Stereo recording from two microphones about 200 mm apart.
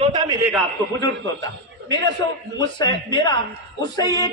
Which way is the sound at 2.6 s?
20° left (ahead or behind).